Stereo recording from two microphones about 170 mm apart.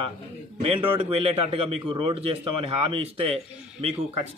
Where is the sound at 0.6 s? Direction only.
35° right (ahead or behind).